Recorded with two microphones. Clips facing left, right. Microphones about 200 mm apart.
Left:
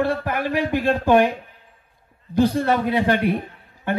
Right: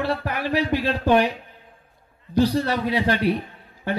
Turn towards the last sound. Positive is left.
turn(degrees=50)  # may be behind; listen again after turning